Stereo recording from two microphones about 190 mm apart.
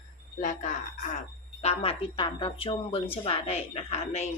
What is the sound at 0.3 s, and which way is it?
Speech, 40° left (ahead or behind).